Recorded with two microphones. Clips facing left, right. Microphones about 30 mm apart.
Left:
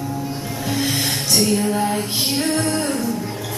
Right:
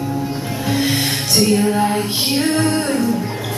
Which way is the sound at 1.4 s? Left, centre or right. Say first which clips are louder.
Right 5 dB; centre.